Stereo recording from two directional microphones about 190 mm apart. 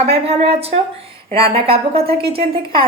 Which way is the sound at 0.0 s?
35° right (ahead or behind).